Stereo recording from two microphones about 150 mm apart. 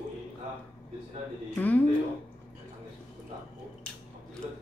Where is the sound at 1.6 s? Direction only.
10° left (ahead or behind).